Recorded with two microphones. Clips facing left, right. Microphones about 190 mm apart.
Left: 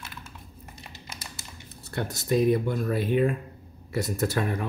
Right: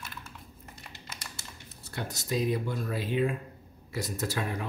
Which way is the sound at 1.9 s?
55° left (ahead or behind).